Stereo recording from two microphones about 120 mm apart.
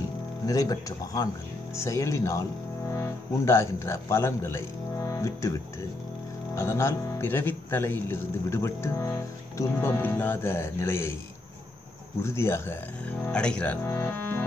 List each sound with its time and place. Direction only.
0.5 s speech: 30° left (ahead or behind)
6.5 s speech: 25° left (ahead or behind)
12.2 s speech: 20° left (ahead or behind)
13.2 s speech: 10° left (ahead or behind)